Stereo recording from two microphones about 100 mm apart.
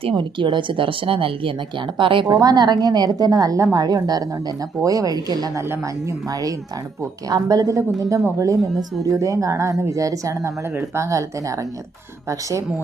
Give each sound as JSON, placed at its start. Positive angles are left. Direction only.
{"t": 0.2, "sound": "speech", "side_deg": -55}
{"t": 2.3, "sound": "a woman's voice", "side_deg": -45}
{"t": 5.6, "sound": "a woman's voice", "side_deg": -30}